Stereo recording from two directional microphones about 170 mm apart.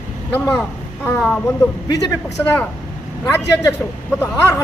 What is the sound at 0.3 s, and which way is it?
Speech, 10° left (ahead or behind).